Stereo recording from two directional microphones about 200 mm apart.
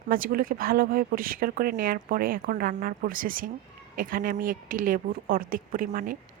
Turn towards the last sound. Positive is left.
turn(degrees=-45)  # may be behind; listen again after turning